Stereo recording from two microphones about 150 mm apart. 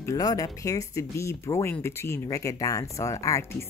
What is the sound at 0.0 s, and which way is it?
Speech, 25° left (ahead or behind).